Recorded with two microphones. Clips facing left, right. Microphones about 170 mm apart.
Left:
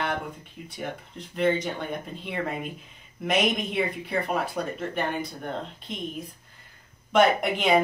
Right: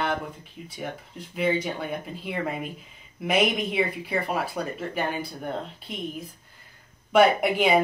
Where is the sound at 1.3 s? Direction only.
5° right (ahead or behind).